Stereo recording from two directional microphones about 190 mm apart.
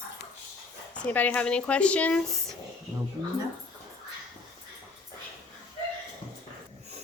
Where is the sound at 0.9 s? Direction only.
10° left (ahead or behind).